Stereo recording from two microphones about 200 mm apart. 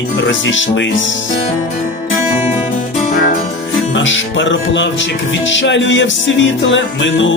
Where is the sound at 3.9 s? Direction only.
70° left (ahead or behind).